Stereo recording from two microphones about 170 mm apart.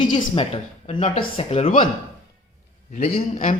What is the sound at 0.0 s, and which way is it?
Speech, 25° left (ahead or behind).